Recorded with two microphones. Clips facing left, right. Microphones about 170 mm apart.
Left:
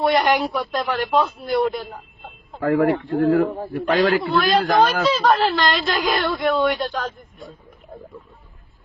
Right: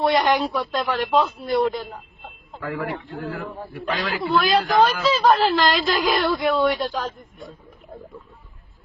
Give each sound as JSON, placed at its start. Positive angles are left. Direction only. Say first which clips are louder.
{"t": 0.0, "sound": "speech", "louder": "left 1 dB", "side_deg": 0}
{"t": 2.6, "sound": "speech", "louder": "left 10 dB", "side_deg": 65}
{"t": 4.1, "sound": "speech", "louder": "left 2 dB", "side_deg": 0}